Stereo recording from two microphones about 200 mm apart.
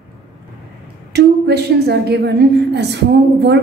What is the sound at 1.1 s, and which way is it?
A woman's voice, 55° right (ahead or behind).